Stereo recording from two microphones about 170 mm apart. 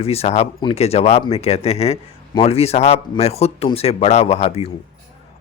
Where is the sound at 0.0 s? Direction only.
35° left (ahead or behind).